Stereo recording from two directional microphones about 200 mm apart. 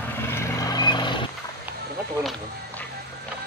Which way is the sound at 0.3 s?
15° left (ahead or behind).